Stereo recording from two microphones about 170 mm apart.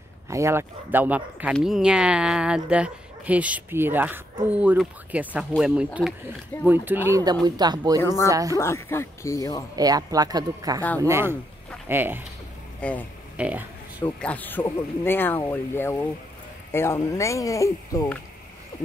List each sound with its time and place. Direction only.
0.3 s speech: 15° right (ahead or behind)
8.0 s speech: 15° left (ahead or behind)
8.3 s speech: 20° right (ahead or behind)
8.5 s speech: 15° left (ahead or behind)
9.8 s speech: 20° right (ahead or behind)
12.8 s speech: 5° left (ahead or behind)
13.4 s a sound: 10° right (ahead or behind)
14.0 s speech: 10° left (ahead or behind)